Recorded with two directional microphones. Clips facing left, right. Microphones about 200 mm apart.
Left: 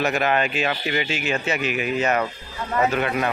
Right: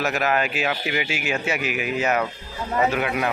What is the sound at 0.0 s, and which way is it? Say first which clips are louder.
Speech: left 1 dB; centre (ahead or behind).